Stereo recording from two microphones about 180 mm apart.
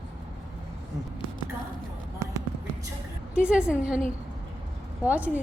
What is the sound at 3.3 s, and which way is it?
Speech, 5° right (ahead or behind).